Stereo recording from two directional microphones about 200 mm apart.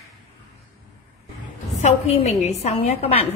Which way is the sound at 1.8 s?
30° left (ahead or behind).